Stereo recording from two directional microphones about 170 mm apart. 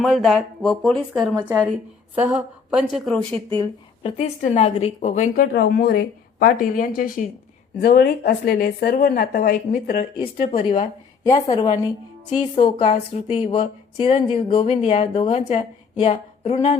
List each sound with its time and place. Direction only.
0.0 s speech: centre (ahead or behind)
2.1 s speech: 10° right (ahead or behind)
3.6 s a woman's voice: 35° left (ahead or behind); by 7.3 s 55° left (ahead or behind)
7.8 s speech: 65° left (ahead or behind)
9.0 s speech: 65° left (ahead or behind)
10.2 s a woman's voice: 30° left (ahead or behind)
11.2 s a woman's voice: 20° left (ahead or behind)
12.5 s a woman's voice: 35° left (ahead or behind)